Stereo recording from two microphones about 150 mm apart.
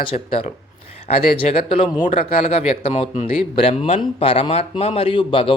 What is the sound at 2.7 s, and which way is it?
Speech, 50° left (ahead or behind).